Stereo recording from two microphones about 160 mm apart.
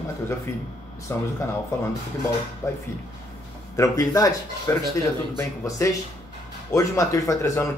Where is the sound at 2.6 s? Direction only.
20° left (ahead or behind).